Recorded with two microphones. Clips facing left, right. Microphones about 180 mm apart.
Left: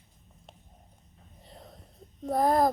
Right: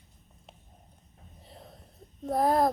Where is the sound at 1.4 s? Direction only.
Centre (ahead or behind).